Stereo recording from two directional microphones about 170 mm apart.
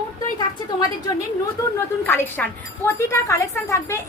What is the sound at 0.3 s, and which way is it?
A woman's voice, 25° left (ahead or behind).